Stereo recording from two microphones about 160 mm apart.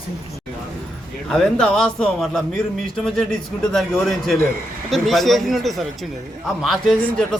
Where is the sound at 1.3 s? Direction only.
5° left (ahead or behind).